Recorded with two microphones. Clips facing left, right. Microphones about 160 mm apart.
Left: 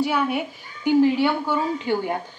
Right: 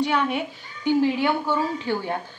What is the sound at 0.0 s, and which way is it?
Speech, 5° left (ahead or behind).